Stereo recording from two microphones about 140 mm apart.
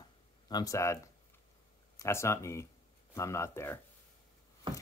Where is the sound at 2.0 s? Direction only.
20° left (ahead or behind).